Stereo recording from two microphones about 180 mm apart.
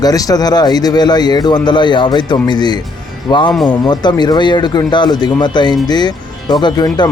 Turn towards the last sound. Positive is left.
turn(degrees=20)  # may be behind; listen again after turning